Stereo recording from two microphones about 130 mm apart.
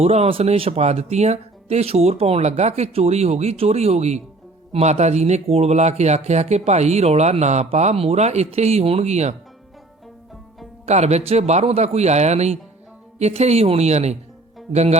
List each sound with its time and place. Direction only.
0.0 s speech: 50° right (ahead or behind)
10.8 s speech: 55° right (ahead or behind)